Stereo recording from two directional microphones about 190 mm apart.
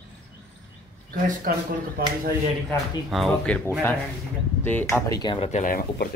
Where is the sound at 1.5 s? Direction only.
50° right (ahead or behind).